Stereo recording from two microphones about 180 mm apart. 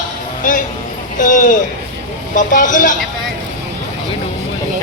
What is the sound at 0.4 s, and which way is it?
Speech, 45° left (ahead or behind).